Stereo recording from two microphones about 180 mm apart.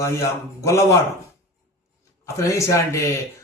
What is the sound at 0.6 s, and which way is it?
Speech, 15° left (ahead or behind).